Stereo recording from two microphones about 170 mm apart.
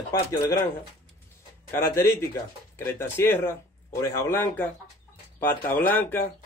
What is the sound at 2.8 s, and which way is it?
Speech, 15° left (ahead or behind).